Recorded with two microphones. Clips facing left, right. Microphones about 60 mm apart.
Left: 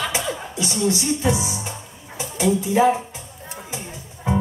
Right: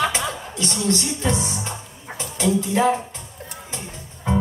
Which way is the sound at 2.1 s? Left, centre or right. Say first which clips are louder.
Left 1 dB; centre.